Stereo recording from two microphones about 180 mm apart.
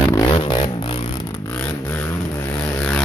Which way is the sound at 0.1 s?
25° left (ahead or behind).